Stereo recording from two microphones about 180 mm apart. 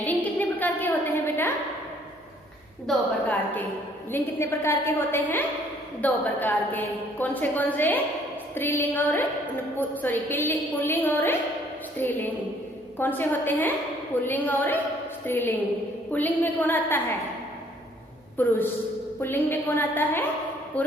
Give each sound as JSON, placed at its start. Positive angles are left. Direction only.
{"t": 0.0, "sound": "a sound", "side_deg": 10}
{"t": 2.8, "sound": "a woman's voice", "side_deg": 5}
{"t": 18.3, "sound": "a woman's voice", "side_deg": 10}